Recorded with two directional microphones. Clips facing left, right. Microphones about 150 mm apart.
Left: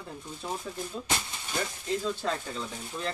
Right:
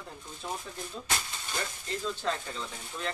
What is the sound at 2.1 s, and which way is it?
Speech, 5° left (ahead or behind).